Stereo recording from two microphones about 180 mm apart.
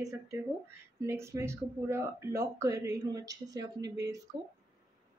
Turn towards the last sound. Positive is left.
turn(degrees=-20)  # may be behind; listen again after turning